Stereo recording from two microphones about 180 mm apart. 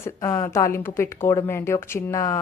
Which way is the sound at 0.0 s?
15° left (ahead or behind).